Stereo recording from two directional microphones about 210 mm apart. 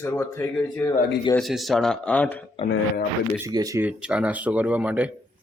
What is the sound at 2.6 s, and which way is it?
Speech, 25° left (ahead or behind).